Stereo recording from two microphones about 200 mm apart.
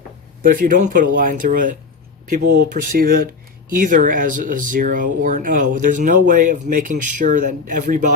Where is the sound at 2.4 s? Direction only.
55° right (ahead or behind).